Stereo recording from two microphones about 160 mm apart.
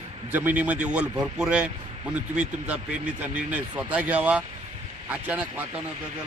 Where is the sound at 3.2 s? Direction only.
10° right (ahead or behind).